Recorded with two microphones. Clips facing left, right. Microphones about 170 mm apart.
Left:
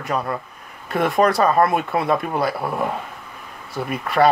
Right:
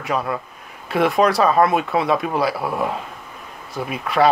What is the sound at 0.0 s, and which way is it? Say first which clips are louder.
Speech: right 1 dB; 5° right (ahead or behind).